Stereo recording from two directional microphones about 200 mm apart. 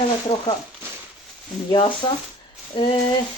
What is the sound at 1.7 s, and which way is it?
Speech, 25° left (ahead or behind).